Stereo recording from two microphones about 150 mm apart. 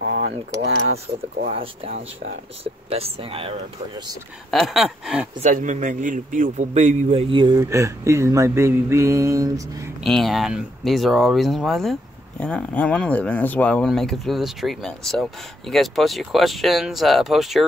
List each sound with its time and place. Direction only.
1.5 s speech: 40° right (ahead or behind)
4.5 s speech: centre (ahead or behind)
5.4 s a man's voice: 55° right (ahead or behind); by 7.6 s 30° right (ahead or behind)
7.7 s mantra: 20° right (ahead or behind)
10.0 s speech: centre (ahead or behind)